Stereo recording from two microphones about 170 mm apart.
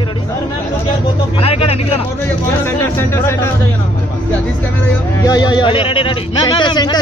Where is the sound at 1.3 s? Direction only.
35° left (ahead or behind).